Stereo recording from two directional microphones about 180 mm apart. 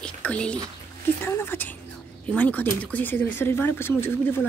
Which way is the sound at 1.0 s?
15° left (ahead or behind).